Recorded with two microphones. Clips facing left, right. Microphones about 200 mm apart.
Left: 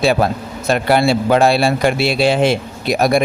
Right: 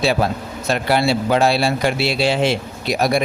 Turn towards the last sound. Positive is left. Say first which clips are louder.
# left 4 dB
turn(degrees=50)  # may be behind; listen again after turning